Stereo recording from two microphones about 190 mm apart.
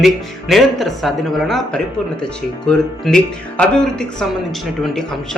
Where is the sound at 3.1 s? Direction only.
Centre (ahead or behind).